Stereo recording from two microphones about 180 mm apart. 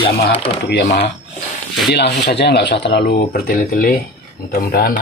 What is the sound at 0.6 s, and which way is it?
Speech, 70° left (ahead or behind).